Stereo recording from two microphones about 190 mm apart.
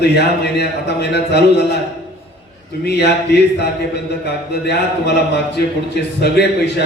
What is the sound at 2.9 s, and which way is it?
Speech, 60° left (ahead or behind).